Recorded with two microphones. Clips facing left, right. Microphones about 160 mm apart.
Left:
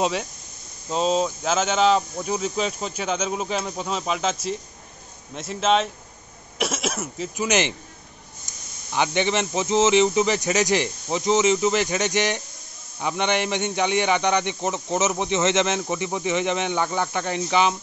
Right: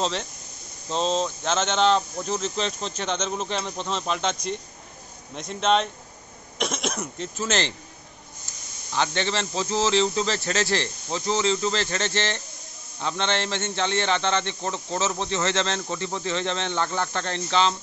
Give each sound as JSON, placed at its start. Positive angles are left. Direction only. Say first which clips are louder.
{"t": 0.0, "sound": "a man's voice", "louder": "left 3 dB", "side_deg": 10}
{"t": 7.4, "sound": "speech", "louder": "left 4 dB", "side_deg": 15}
{"t": 8.5, "sound": "a sound", "louder": "left 1 dB", "side_deg": 15}
{"t": 8.9, "sound": "speech", "louder": "left 3 dB", "side_deg": 15}